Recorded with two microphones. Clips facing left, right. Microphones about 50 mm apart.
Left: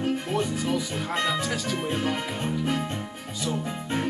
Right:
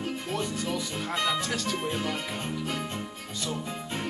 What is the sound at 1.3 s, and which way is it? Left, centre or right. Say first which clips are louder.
Speech: left 2 dB; centre.